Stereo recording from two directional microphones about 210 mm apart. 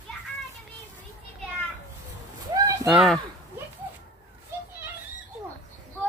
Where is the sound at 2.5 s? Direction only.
15° right (ahead or behind).